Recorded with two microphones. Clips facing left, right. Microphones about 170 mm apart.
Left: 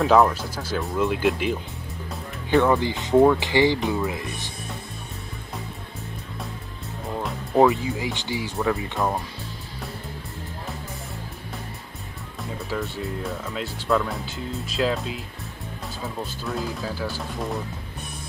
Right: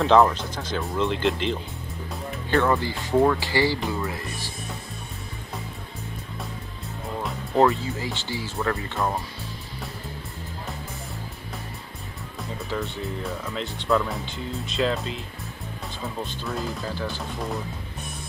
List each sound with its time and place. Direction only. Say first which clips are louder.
0.0 s speech: even; 5° left (ahead or behind)
7.2 s music: left 2 dB; 5° left (ahead or behind)
7.7 s speech: left 3 dB; 15° left (ahead or behind)
12.4 s speech: left 1 dB; centre (ahead or behind)